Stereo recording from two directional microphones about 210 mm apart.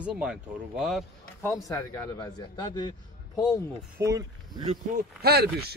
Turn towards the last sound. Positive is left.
turn(degrees=-50)  # may be behind; listen again after turning